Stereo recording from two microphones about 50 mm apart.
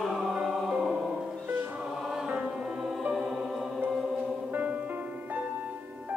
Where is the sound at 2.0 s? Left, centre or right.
Centre.